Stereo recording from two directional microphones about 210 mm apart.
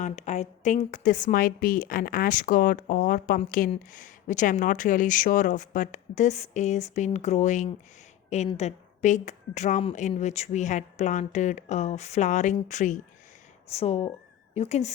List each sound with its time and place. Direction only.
0.0 s speech: 35° left (ahead or behind)